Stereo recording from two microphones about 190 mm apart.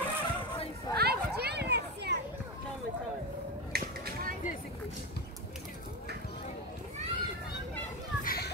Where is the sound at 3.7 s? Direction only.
55° right (ahead or behind).